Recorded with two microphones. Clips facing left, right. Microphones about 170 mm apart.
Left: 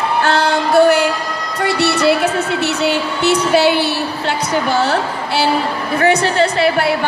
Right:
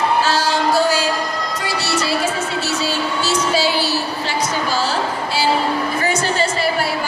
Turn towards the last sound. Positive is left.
turn(degrees=60)  # may be behind; listen again after turning